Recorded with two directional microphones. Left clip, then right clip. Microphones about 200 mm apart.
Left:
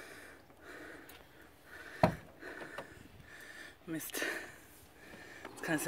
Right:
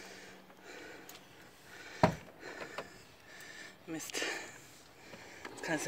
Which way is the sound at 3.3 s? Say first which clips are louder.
Right 1 dB; 35° left (ahead or behind).